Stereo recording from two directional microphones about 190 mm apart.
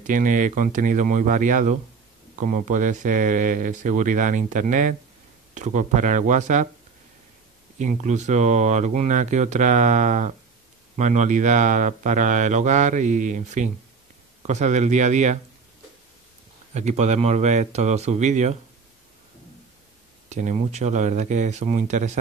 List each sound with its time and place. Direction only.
0.0 s speech: 45° right (ahead or behind)
7.8 s speech: 40° right (ahead or behind)
16.7 s speech: 35° right (ahead or behind)
20.2 s speech: 40° right (ahead or behind)